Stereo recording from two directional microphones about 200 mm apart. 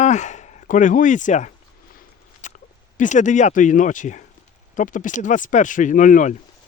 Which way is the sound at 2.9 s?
40° left (ahead or behind).